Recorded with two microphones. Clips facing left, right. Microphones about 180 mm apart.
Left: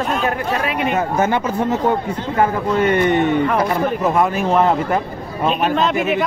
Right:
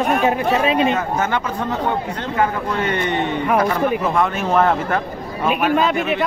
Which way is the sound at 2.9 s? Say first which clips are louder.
Left 6 dB; 20° right (ahead or behind).